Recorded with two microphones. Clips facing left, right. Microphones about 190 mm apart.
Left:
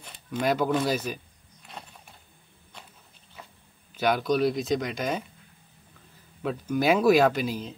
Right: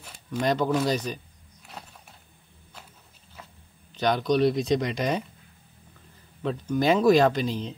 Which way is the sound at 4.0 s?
5° left (ahead or behind).